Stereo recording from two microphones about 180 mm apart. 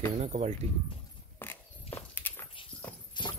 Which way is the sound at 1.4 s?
10° left (ahead or behind).